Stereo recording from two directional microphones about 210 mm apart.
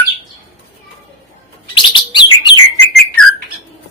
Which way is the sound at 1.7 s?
20° left (ahead or behind).